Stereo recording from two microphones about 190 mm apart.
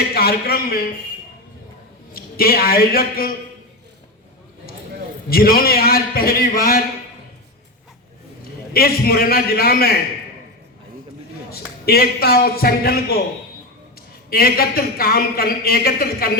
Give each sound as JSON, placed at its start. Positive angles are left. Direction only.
{"t": 0.1, "sound": "a man's voice", "side_deg": 55}
{"t": 2.1, "sound": "a man's voice", "side_deg": 50}
{"t": 5.3, "sound": "a man's voice", "side_deg": 50}
{"t": 8.7, "sound": "a man's voice", "side_deg": 55}
{"t": 11.9, "sound": "a man's voice", "side_deg": 55}
{"t": 14.3, "sound": "a man's voice", "side_deg": 55}